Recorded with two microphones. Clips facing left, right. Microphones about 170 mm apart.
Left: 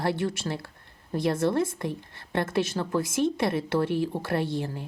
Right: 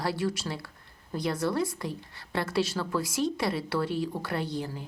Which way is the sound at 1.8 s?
55° left (ahead or behind).